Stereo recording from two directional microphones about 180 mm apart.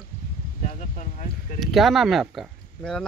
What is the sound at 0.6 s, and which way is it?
Speech, 40° left (ahead or behind).